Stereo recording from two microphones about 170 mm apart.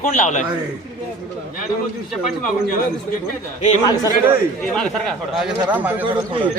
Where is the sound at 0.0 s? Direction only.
45° left (ahead or behind).